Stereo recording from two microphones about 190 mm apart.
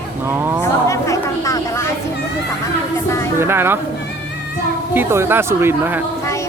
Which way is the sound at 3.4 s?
10° right (ahead or behind).